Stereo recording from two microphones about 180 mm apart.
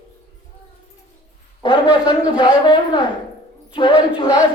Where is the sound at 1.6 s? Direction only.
25° left (ahead or behind).